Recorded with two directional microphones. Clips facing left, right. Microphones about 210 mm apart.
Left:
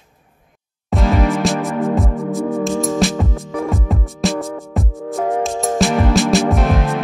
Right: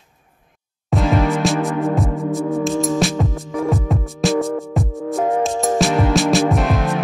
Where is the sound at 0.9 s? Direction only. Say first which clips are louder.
Even; centre (ahead or behind).